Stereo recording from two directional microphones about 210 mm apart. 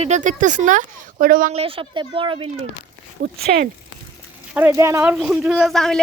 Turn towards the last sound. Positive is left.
turn(degrees=0)  # may be behind; listen again after turning